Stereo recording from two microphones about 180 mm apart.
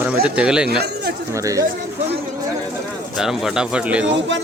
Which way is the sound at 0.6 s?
65° right (ahead or behind).